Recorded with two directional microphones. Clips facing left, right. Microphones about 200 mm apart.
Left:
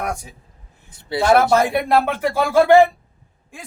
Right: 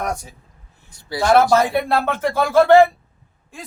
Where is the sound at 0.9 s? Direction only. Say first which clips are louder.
Left 1 dB; 25° left (ahead or behind).